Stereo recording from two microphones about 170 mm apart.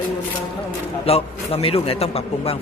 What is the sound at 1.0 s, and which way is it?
A man's voice, 35° left (ahead or behind).